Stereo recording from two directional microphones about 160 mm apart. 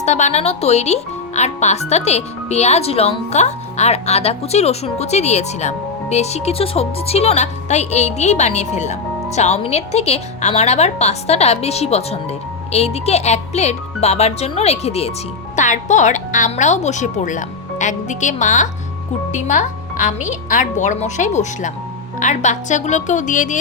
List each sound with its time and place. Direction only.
0.0 s a child's voice: 45° left (ahead or behind)